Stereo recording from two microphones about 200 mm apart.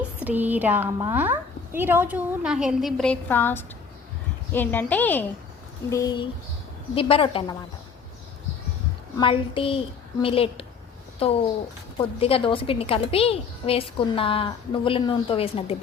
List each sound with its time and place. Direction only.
0.3 s a woman's voice: 10° right (ahead or behind); by 5.2 s 10° left (ahead or behind)
5.9 s a woman's voice: 20° left (ahead or behind)
9.1 s a woman's voice: 25° left (ahead or behind)